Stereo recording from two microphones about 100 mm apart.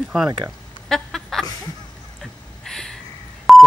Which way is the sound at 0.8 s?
Centre (ahead or behind).